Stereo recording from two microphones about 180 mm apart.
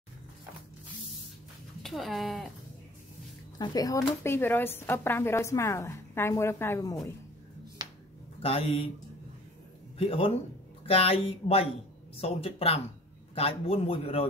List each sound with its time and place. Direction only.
1.8 s speech: centre (ahead or behind)
3.5 s speech: 20° left (ahead or behind)
7.8 s finger snapping: 20° right (ahead or behind)
8.4 s a man's voice: 35° left (ahead or behind)
9.9 s a man's voice: 30° left (ahead or behind)